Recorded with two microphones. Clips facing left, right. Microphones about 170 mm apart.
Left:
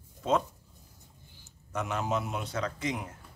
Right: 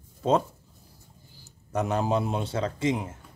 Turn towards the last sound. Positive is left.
turn(degrees=-25)  # may be behind; listen again after turning